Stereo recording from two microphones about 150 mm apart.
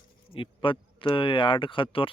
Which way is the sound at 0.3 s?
35° left (ahead or behind).